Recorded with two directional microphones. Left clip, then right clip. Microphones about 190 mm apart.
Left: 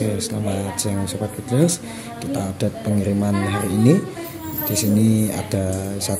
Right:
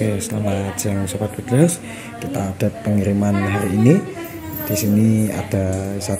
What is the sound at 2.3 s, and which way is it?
Speech, 10° right (ahead or behind).